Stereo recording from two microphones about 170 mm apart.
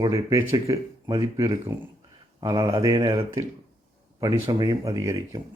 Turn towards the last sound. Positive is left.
turn(degrees=-20)  # may be behind; listen again after turning